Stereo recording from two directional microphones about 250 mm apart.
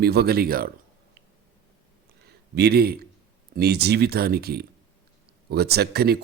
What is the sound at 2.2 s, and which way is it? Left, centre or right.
Speech, right.